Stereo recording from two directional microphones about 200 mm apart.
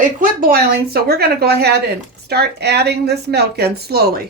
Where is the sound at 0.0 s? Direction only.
45° right (ahead or behind).